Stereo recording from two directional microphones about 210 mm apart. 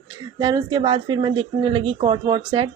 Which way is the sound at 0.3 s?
20° right (ahead or behind).